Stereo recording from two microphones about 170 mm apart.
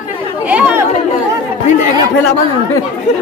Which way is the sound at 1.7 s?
45° left (ahead or behind).